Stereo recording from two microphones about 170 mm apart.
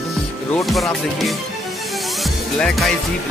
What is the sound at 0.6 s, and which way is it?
Music, centre (ahead or behind).